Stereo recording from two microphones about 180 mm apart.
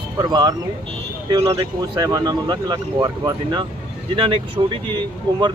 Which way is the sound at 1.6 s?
20° right (ahead or behind).